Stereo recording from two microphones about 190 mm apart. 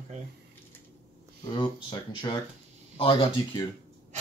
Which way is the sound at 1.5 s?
25° left (ahead or behind).